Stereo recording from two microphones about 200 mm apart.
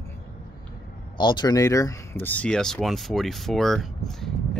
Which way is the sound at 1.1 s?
20° left (ahead or behind).